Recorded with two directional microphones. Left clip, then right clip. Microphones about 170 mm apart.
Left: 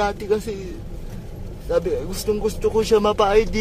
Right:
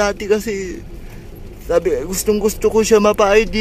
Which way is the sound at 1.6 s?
20° right (ahead or behind).